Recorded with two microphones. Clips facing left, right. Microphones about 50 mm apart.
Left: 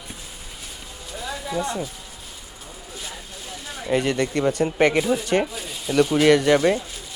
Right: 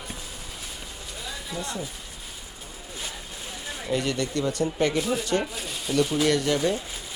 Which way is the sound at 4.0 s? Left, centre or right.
Left.